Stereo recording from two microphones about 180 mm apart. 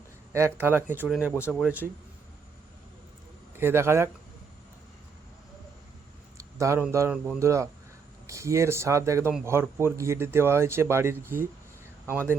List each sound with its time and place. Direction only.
0.3 s speech: 15° right (ahead or behind)
3.5 s a man's voice: 15° right (ahead or behind)
6.3 s a sound: 15° right (ahead or behind)
6.9 s speech: 15° right (ahead or behind)